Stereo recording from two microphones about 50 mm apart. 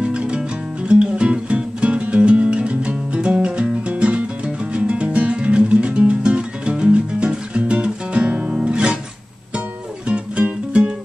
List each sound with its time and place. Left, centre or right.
0.0 s music: right
10.0 s music: right